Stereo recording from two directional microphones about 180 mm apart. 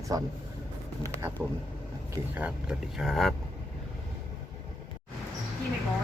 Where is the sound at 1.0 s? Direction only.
15° right (ahead or behind).